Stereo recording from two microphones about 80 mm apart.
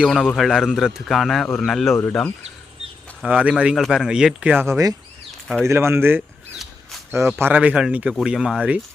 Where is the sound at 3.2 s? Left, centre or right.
Centre.